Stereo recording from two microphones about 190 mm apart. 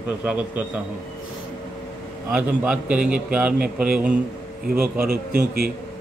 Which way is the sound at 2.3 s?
5° right (ahead or behind).